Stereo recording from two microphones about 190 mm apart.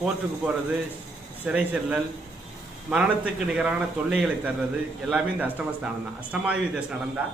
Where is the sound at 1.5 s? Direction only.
5° right (ahead or behind).